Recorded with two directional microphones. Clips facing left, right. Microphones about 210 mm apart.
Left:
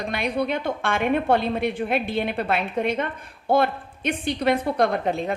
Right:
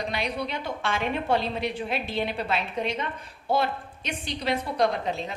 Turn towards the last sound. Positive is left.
turn(degrees=55)  # may be behind; listen again after turning